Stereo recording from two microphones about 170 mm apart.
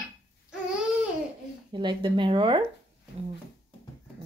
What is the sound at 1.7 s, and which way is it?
Speech, 30° right (ahead or behind).